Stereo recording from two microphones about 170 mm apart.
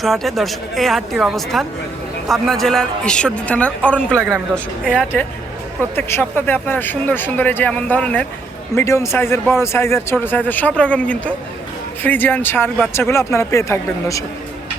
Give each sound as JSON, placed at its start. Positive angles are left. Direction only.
{"t": 0.0, "sound": "a woman's voice", "side_deg": 0}
{"t": 6.0, "sound": "a man's voice", "side_deg": 15}